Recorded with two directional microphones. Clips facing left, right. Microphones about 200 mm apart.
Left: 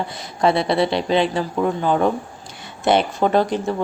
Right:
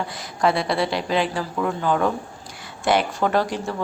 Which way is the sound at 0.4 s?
25° left (ahead or behind).